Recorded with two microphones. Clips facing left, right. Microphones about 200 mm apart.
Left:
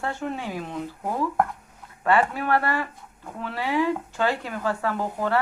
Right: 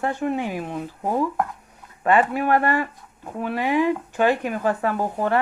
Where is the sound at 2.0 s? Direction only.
15° right (ahead or behind).